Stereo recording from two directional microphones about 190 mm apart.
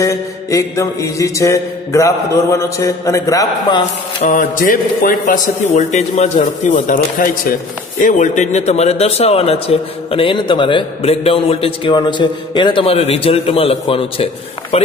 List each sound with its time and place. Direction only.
0.0 s mantra: 15° left (ahead or behind)
4.2 s speech: 45° left (ahead or behind)